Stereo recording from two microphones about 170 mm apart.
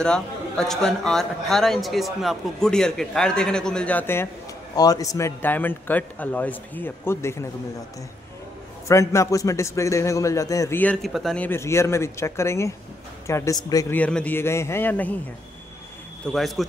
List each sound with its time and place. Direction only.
0.0 s a man's voice: 5° left (ahead or behind)
8.8 s a man's voice: 20° left (ahead or behind)
13.9 s a man's voice: 10° left (ahead or behind)
16.3 s a man's voice: centre (ahead or behind)